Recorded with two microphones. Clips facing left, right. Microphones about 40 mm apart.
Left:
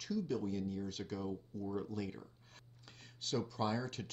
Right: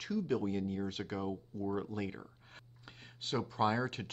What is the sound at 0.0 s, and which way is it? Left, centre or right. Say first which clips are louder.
Speech: right 4 dB; right.